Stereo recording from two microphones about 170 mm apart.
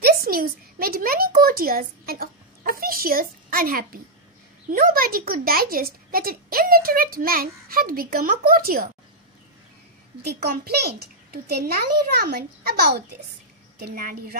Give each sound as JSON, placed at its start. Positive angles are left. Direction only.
{"t": 0.0, "sound": "a sound", "side_deg": -60}
{"t": 4.6, "sound": "speech", "side_deg": -60}
{"t": 10.2, "sound": "a child's voice", "side_deg": -65}